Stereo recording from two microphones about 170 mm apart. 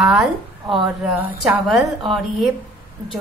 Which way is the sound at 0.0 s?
Centre (ahead or behind).